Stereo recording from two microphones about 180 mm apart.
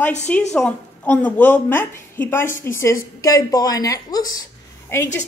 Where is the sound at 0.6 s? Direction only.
5° left (ahead or behind).